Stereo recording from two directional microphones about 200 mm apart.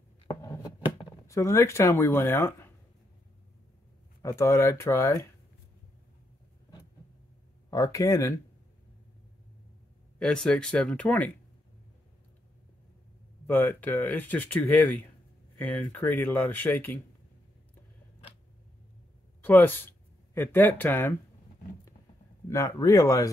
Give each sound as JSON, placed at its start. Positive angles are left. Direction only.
{"t": 0.3, "sound": "a sound", "side_deg": 20}
{"t": 4.2, "sound": "speech", "side_deg": 15}
{"t": 7.7, "sound": "speech", "side_deg": 15}
{"t": 10.1, "sound": "speech", "side_deg": 5}
{"t": 13.5, "sound": "speech", "side_deg": 10}
{"t": 19.4, "sound": "speech", "side_deg": 10}
{"t": 22.5, "sound": "speech", "side_deg": 15}